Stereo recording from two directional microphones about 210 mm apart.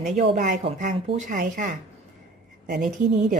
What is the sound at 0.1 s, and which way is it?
Speech, 40° right (ahead or behind).